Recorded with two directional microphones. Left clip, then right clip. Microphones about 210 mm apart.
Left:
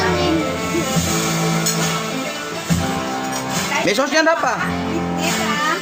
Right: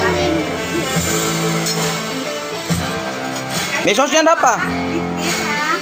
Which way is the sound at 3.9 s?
5° right (ahead or behind).